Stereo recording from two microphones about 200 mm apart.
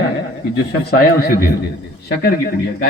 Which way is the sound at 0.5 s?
50° left (ahead or behind).